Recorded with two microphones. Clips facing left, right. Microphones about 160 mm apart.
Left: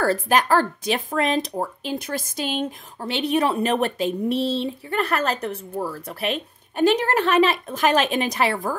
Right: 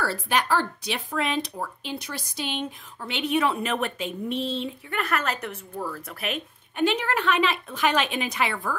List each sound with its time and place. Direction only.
0.0 s speech: 45° left (ahead or behind)